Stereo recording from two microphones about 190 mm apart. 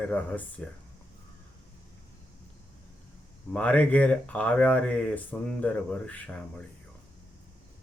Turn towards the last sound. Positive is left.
turn(degrees=5)  # may be behind; listen again after turning